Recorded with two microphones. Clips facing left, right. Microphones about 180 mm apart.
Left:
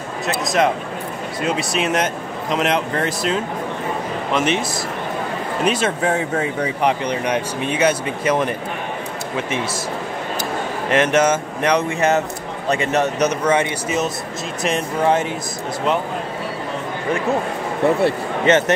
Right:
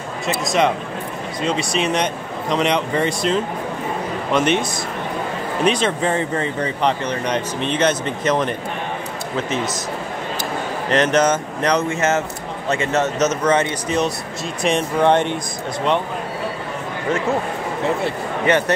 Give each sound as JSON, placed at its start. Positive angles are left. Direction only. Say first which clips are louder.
{"t": 0.5, "sound": "speech", "louder": "even", "side_deg": 0}
{"t": 5.7, "sound": "speech", "louder": "even", "side_deg": 5}
{"t": 10.9, "sound": "speech", "louder": "even", "side_deg": 10}
{"t": 18.5, "sound": "speech", "louder": "left 2 dB", "side_deg": 25}